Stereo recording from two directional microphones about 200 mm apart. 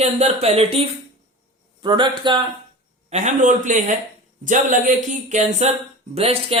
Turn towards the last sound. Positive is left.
turn(degrees=-30)  # may be behind; listen again after turning